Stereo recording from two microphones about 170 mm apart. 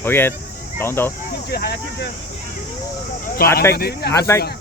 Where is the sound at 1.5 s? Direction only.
65° left (ahead or behind).